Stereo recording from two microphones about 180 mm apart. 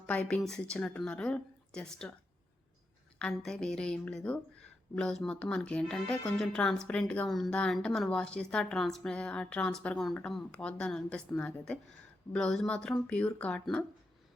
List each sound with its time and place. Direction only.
0.0 s a woman's voice: 5° left (ahead or behind)
3.2 s a woman's voice: 5° left (ahead or behind)